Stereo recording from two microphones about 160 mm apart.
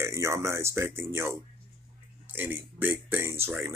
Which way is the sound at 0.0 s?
15° right (ahead or behind).